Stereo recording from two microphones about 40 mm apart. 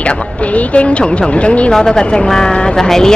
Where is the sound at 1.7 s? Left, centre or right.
Centre.